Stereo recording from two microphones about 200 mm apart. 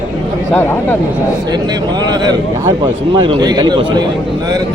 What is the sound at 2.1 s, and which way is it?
A man's voice, 20° right (ahead or behind).